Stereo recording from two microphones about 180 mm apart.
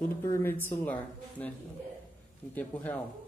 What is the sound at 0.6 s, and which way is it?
Speech, 10° left (ahead or behind).